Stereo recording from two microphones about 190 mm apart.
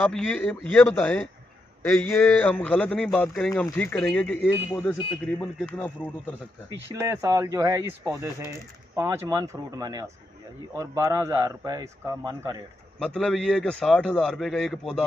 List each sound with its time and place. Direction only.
0.0 s a man's voice: 5° left (ahead or behind)
7.1 s speech: 15° right (ahead or behind)
13.0 s a man's voice: 5° left (ahead or behind)